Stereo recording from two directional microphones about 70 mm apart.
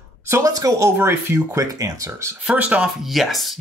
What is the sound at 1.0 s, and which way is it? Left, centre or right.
Speech, right.